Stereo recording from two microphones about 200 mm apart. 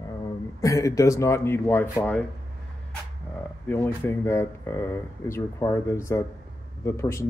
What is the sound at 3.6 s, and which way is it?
Speech, 10° left (ahead or behind).